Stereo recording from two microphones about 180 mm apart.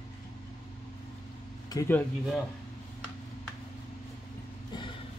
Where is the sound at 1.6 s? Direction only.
20° left (ahead or behind).